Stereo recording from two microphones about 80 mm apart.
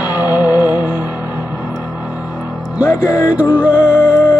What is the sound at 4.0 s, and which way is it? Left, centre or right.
Music, left.